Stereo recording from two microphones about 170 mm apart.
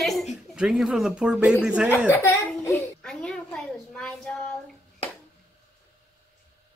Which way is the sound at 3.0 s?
5° left (ahead or behind).